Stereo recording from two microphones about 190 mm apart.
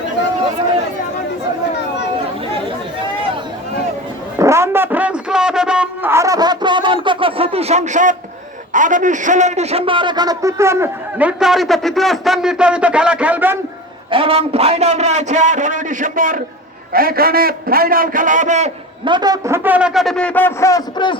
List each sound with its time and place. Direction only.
4.4 s a sound: 15° right (ahead or behind); by 8.1 s 40° right (ahead or behind)
8.7 s a man's voice: 40° right (ahead or behind); by 13.6 s 10° right (ahead or behind)
14.1 s a man's voice: 30° right (ahead or behind)
19.0 s a man's voice: 20° right (ahead or behind); by 21.2 s 20° left (ahead or behind)